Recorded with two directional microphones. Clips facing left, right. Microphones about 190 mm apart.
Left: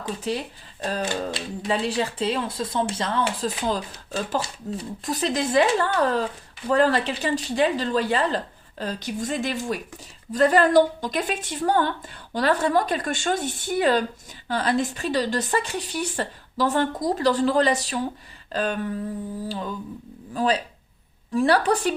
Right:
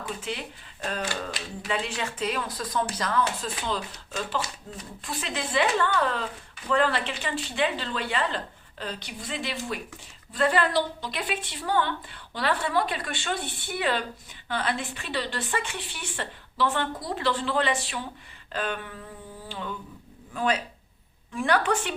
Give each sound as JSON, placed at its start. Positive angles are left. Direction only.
{"t": 0.2, "sound": "speech", "side_deg": 35}
{"t": 3.7, "sound": "a woman's voice", "side_deg": 40}